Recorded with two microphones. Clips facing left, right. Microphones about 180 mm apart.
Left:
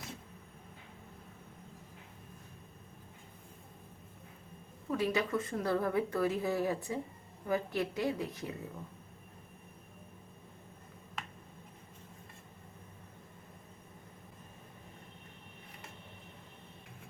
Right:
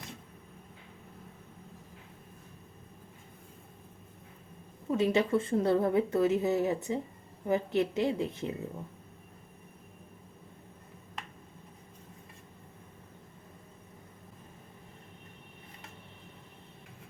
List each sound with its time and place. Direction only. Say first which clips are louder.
4.9 s a woman's voice: right 5 dB; 25° right (ahead or behind)